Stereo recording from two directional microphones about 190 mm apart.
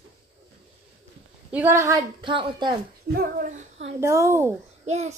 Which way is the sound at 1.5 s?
10° right (ahead or behind).